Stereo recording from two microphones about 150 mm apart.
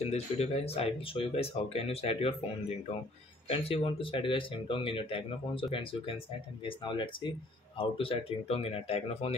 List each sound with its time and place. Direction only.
0.0 s speech: 45° left (ahead or behind)
3.4 s speech: 40° left (ahead or behind)